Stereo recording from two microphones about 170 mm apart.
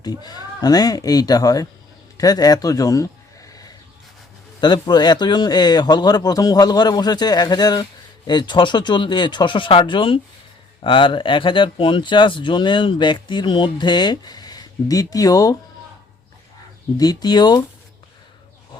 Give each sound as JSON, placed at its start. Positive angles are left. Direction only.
{"t": 0.0, "sound": "speech", "side_deg": 25}
{"t": 2.1, "sound": "a sound", "side_deg": 20}
{"t": 4.6, "sound": "speech", "side_deg": 25}
{"t": 17.0, "sound": "speech", "side_deg": 25}